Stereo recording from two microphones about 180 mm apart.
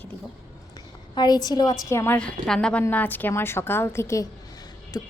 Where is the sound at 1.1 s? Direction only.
25° left (ahead or behind).